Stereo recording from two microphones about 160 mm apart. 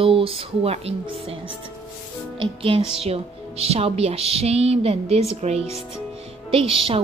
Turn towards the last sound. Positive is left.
turn(degrees=-35)  # may be behind; listen again after turning